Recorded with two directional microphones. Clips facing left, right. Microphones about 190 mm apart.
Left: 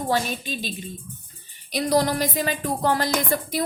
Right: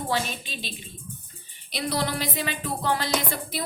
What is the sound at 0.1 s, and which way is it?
Speech, 45° left (ahead or behind).